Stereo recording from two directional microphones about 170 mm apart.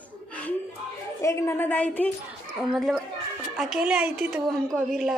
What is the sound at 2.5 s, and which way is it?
A woman's voice, 5° right (ahead or behind).